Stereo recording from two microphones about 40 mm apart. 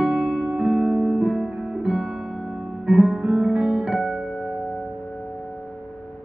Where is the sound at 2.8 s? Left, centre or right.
Right.